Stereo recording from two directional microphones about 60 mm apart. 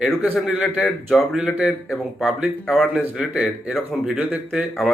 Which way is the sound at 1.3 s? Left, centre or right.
Centre.